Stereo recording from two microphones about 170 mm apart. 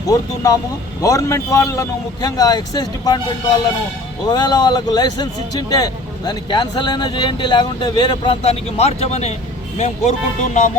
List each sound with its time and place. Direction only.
0.0 s a man's voice: 20° left (ahead or behind); by 10.7 s 45° left (ahead or behind)